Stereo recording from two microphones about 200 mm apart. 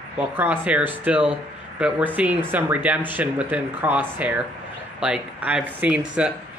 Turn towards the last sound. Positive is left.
turn(degrees=-5)  # may be behind; listen again after turning